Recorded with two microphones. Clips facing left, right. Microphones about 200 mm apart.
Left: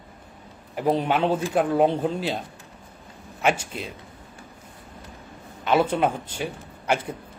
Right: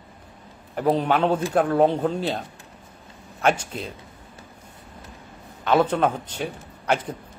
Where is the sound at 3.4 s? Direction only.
10° left (ahead or behind).